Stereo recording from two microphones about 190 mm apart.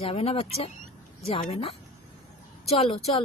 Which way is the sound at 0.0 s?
30° left (ahead or behind).